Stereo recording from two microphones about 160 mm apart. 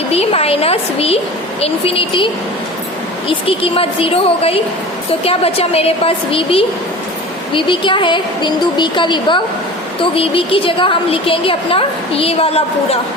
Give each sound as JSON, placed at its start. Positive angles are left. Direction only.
{"t": 0.1, "sound": "a woman's voice", "side_deg": 40}